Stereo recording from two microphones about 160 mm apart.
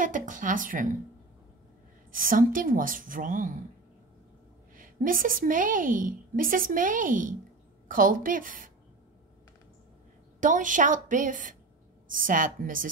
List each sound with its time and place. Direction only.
0.0 s a woman's voice: 55° right (ahead or behind)
2.1 s a woman's voice: 60° right (ahead or behind)
4.7 s a woman's voice: 60° right (ahead or behind)
10.4 s a woman's voice: 55° right (ahead or behind)